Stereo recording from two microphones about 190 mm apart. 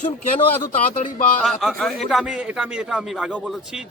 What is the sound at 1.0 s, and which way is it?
Speech, 40° left (ahead or behind).